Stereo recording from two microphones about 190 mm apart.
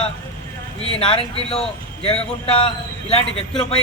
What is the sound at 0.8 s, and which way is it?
A man's voice, 30° left (ahead or behind).